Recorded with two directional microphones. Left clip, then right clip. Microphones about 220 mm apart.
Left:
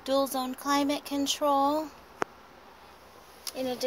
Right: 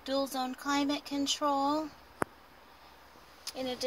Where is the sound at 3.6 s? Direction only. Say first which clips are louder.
Left 4 dB; 15° left (ahead or behind).